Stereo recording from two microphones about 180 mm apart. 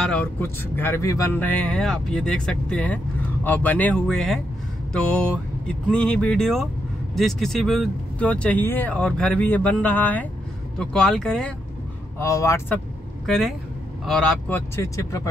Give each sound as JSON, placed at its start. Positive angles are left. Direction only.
{"t": 0.0, "sound": "speech", "side_deg": 5}
{"t": 12.2, "sound": "speech", "side_deg": 15}
{"t": 14.0, "sound": "speech", "side_deg": 0}
{"t": 14.8, "sound": "speech", "side_deg": 20}